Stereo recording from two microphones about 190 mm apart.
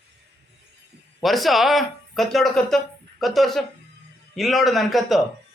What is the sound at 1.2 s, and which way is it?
Speech, centre (ahead or behind).